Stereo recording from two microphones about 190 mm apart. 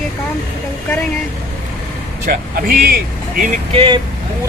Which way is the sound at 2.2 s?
50° right (ahead or behind).